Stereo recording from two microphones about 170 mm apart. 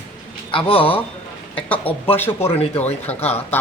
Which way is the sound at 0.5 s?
30° left (ahead or behind).